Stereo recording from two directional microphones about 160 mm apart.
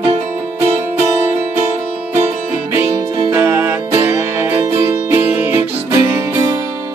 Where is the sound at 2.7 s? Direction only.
15° right (ahead or behind).